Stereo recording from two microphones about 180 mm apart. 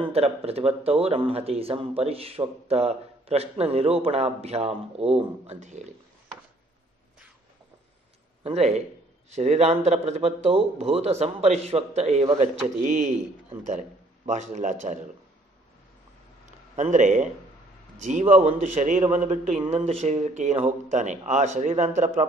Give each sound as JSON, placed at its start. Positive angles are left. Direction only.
{"t": 0.0, "sound": "speech", "side_deg": -35}
{"t": 8.5, "sound": "a man's voice", "side_deg": -40}
{"t": 16.4, "sound": "a sound", "side_deg": -45}
{"t": 17.9, "sound": "speech", "side_deg": -40}